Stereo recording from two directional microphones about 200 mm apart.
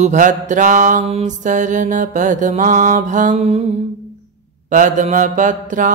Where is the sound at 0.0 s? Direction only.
40° right (ahead or behind).